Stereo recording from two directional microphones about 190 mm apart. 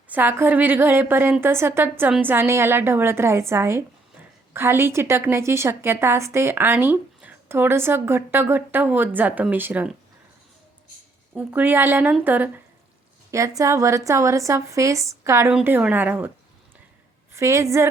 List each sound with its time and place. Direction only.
0.1 s a woman's voice: 10° right (ahead or behind)
11.3 s a woman's voice: 10° right (ahead or behind)
17.3 s a woman's voice: 15° right (ahead or behind)